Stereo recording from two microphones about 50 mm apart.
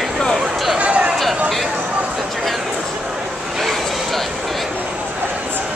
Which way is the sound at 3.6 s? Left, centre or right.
Centre.